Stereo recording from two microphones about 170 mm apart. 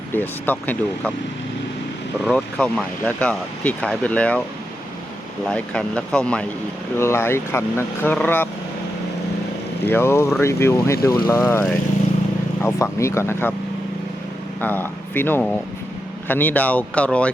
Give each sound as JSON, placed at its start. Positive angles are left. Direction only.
{"t": 0.1, "sound": "speech", "side_deg": 10}
{"t": 2.2, "sound": "speech", "side_deg": 5}
{"t": 5.5, "sound": "speech", "side_deg": 5}
{"t": 9.8, "sound": "speech", "side_deg": 15}
{"t": 12.6, "sound": "speech", "side_deg": 15}
{"t": 14.6, "sound": "speech", "side_deg": 10}